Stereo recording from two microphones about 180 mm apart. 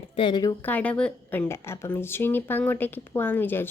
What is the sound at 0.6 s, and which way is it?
A woman's voice, 10° left (ahead or behind).